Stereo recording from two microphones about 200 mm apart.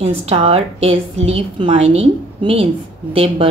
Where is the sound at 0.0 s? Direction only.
30° right (ahead or behind).